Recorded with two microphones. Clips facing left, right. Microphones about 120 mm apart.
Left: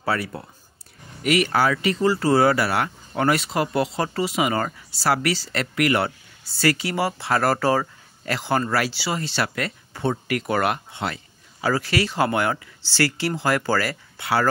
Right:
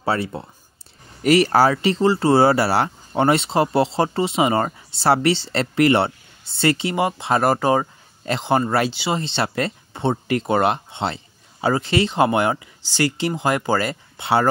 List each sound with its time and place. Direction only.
0.0 s speech: 25° right (ahead or behind)
1.2 s speech: 35° right (ahead or behind)